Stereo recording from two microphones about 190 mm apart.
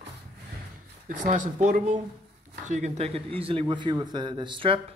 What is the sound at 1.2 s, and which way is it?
Speech, 40° right (ahead or behind).